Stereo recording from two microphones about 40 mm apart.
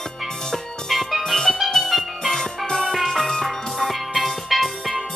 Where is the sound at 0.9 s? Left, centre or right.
Centre.